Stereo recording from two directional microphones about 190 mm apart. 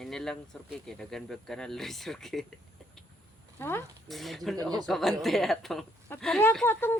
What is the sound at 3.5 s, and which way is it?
Speech, 10° left (ahead or behind).